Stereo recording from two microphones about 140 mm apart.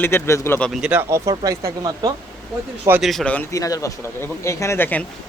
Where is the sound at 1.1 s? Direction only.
25° right (ahead or behind).